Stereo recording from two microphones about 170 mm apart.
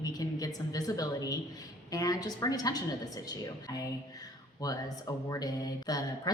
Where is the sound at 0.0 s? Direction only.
20° left (ahead or behind).